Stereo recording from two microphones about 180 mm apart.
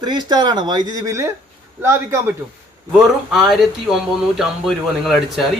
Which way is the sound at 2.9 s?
Centre (ahead or behind).